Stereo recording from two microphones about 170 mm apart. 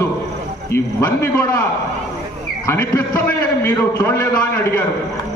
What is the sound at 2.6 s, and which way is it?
A man's voice, 15° left (ahead or behind).